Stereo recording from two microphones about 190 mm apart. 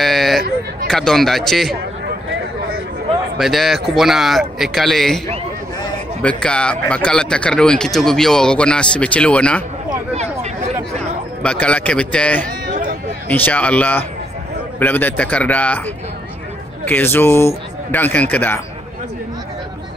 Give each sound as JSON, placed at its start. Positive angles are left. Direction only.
{"t": 0.0, "sound": "a sound", "side_deg": 0}
{"t": 0.8, "sound": "speech", "side_deg": 0}
{"t": 3.3, "sound": "speech", "side_deg": 0}
{"t": 6.2, "sound": "speech", "side_deg": 5}
{"t": 10.1, "sound": "a sound", "side_deg": -35}
{"t": 11.4, "sound": "speech", "side_deg": 5}
{"t": 12.6, "sound": "a sound", "side_deg": -40}
{"t": 13.3, "sound": "speech", "side_deg": 5}
{"t": 16.8, "sound": "speech", "side_deg": 10}